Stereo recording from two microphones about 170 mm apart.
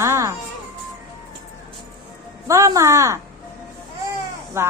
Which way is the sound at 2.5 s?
20° right (ahead or behind).